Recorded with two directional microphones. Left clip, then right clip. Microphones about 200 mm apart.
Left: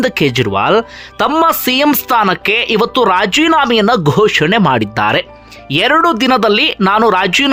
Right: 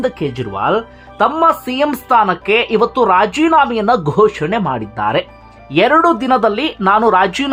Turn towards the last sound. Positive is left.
turn(degrees=15)  # may be behind; listen again after turning